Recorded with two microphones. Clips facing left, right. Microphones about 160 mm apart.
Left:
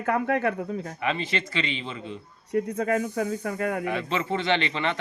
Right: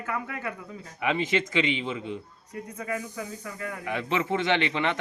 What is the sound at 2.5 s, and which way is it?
Speech, 70° left (ahead or behind).